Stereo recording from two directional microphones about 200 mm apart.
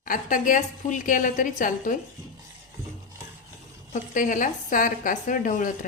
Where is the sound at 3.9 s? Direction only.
40° left (ahead or behind).